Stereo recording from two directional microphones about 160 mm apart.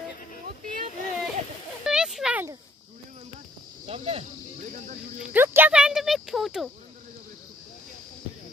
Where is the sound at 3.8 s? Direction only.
40° right (ahead or behind).